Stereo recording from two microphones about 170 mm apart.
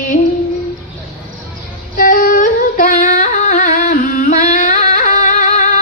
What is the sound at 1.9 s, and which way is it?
Singing, 55° left (ahead or behind).